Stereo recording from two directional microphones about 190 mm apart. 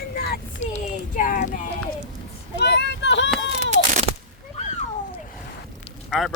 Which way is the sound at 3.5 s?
40° right (ahead or behind).